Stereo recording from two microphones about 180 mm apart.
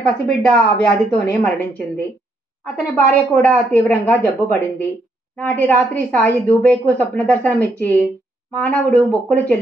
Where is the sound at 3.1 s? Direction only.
10° left (ahead or behind).